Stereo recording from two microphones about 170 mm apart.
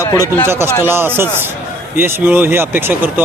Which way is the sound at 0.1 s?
20° left (ahead or behind).